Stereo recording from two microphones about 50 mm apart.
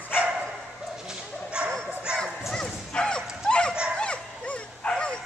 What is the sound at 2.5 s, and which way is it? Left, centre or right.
Dog, centre.